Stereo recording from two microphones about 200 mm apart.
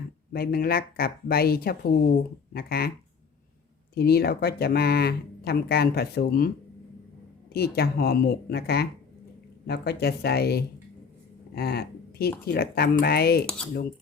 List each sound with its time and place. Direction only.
0.3 s speech: 50° left (ahead or behind)
3.9 s speech: 50° left (ahead or behind)
7.5 s speech: 50° left (ahead or behind)